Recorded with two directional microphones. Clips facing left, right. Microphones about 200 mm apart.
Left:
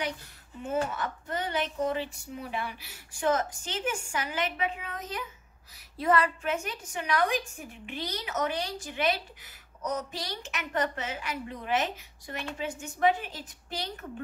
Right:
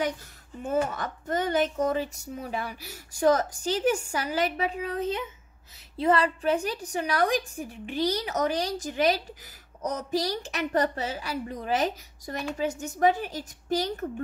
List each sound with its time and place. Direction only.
0.9 s speech: 40° right (ahead or behind)